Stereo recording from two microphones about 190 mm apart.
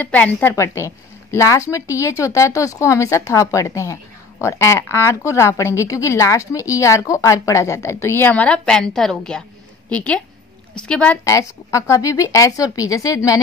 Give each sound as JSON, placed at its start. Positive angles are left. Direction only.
{"t": 0.0, "sound": "a woman's voice", "side_deg": 10}
{"t": 11.2, "sound": "a woman's voice", "side_deg": 15}